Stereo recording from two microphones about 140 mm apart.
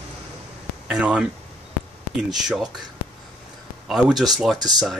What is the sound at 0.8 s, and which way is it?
Speech, 10° right (ahead or behind).